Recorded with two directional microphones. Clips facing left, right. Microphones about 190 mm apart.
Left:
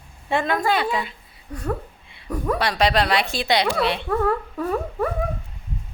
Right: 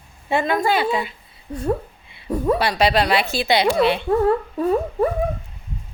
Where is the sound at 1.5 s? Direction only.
25° right (ahead or behind).